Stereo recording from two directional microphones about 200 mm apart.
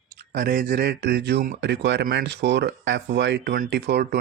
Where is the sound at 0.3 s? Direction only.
45° right (ahead or behind).